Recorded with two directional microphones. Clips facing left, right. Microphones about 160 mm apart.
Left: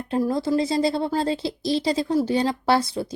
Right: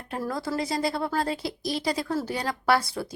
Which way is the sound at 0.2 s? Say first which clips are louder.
Left 7 dB; 20° left (ahead or behind).